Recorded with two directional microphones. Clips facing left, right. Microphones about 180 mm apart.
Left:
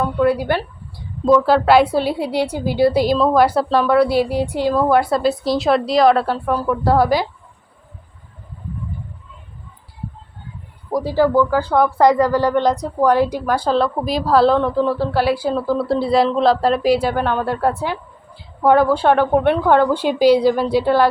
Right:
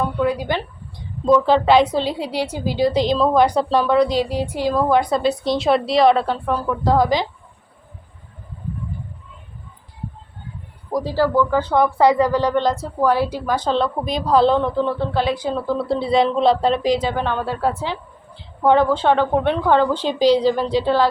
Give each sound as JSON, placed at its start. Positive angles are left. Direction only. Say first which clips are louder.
{"t": 0.5, "sound": "speech", "louder": "left 3 dB", "side_deg": 5}
{"t": 11.0, "sound": "speech", "louder": "left 3 dB", "side_deg": 15}
{"t": 11.9, "sound": "a woman's voice", "louder": "left 2 dB", "side_deg": -15}
{"t": 12.4, "sound": "speech", "louder": "left 2 dB", "side_deg": 10}
{"t": 13.6, "sound": "speech", "louder": "left 2 dB", "side_deg": 5}